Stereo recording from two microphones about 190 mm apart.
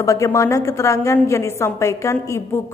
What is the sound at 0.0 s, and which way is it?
A woman's voice, 15° left (ahead or behind).